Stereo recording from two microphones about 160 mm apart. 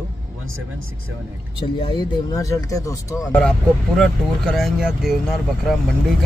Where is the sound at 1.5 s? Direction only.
30° left (ahead or behind).